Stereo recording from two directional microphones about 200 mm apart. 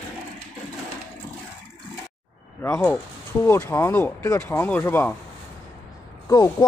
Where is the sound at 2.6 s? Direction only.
15° left (ahead or behind).